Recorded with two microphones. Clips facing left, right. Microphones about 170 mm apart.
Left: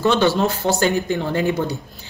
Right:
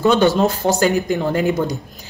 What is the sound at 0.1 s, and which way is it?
Speech, 15° right (ahead or behind).